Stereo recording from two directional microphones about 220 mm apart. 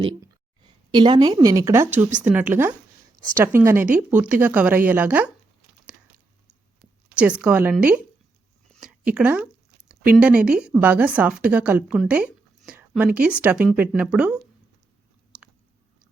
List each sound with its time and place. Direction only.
0.6 s speech: 20° right (ahead or behind)
7.2 s speech: 5° right (ahead or behind)
8.7 s a sound: 5° right (ahead or behind)
9.9 s speech: 5° right (ahead or behind)
15.3 s chewing: 5° right (ahead or behind)